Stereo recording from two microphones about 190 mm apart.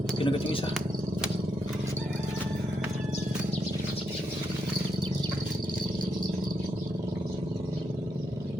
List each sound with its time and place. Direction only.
0.2 s speech: 30° left (ahead or behind)